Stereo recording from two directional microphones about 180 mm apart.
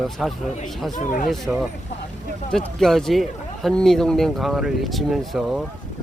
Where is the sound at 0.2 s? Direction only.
Centre (ahead or behind).